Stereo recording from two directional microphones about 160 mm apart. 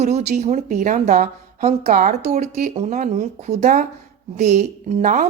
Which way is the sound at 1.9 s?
55° right (ahead or behind).